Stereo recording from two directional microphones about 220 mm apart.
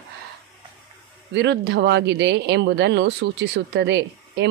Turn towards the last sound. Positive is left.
turn(degrees=-55)  # may be behind; listen again after turning